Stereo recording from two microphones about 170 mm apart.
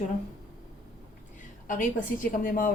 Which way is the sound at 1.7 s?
50° left (ahead or behind).